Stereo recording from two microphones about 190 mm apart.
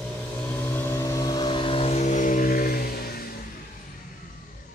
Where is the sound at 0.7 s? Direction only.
10° left (ahead or behind); by 3.2 s 50° left (ahead or behind).